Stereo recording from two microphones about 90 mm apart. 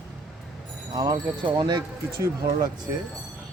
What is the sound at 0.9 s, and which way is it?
Speech, 45° right (ahead or behind).